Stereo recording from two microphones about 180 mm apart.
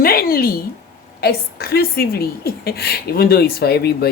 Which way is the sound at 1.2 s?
60° left (ahead or behind).